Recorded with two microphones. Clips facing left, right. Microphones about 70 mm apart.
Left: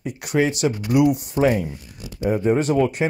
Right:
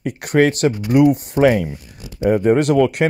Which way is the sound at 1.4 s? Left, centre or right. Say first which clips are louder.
Right 5 dB; right.